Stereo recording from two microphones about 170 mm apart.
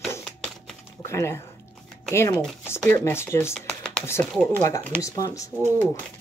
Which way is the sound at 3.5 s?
5° left (ahead or behind).